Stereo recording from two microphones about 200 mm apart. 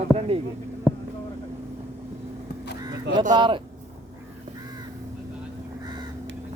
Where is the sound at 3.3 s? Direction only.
25° right (ahead or behind).